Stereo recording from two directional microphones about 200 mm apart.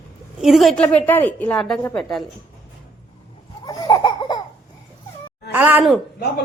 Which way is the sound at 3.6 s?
20° left (ahead or behind).